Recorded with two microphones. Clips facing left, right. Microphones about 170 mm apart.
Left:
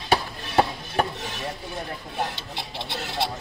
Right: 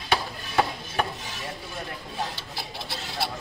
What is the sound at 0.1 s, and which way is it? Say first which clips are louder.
Chop: left 4 dB; 35° left (ahead or behind).